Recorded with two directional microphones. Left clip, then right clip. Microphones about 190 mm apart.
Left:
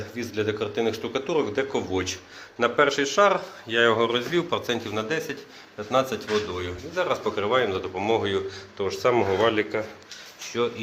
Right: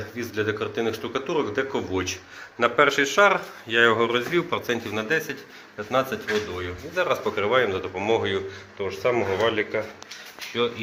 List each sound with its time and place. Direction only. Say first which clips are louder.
0.2 s speech: right 1 dB; centre (ahead or behind)
6.3 s speech: left 1 dB; 10° left (ahead or behind)
6.9 s speech: right 2 dB; 5° right (ahead or behind)
8.8 s speech: left 2 dB; 20° left (ahead or behind)
9.4 s speech: left 1 dB; 10° left (ahead or behind)